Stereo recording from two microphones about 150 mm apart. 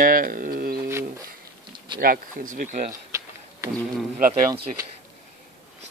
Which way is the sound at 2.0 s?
70° right (ahead or behind).